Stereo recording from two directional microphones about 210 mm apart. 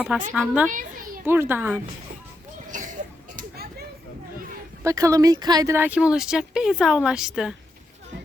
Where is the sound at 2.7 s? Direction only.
40° right (ahead or behind).